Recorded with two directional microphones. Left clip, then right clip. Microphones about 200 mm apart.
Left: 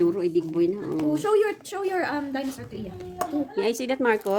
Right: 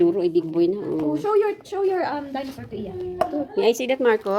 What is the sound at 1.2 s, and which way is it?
A woman's voice, 65° left (ahead or behind).